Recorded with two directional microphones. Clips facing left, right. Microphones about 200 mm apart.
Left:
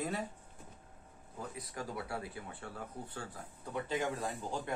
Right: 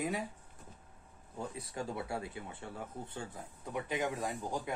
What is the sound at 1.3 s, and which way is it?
Speech, 30° right (ahead or behind).